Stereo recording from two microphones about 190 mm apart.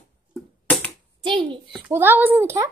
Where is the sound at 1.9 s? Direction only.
10° right (ahead or behind).